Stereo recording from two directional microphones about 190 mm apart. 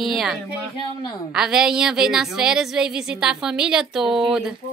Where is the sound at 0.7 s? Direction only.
25° left (ahead or behind).